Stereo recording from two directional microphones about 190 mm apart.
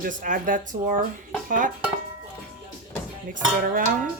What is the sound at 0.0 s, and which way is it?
Speech, 45° right (ahead or behind).